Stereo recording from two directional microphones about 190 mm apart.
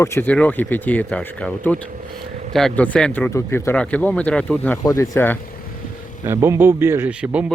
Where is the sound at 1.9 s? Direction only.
45° right (ahead or behind).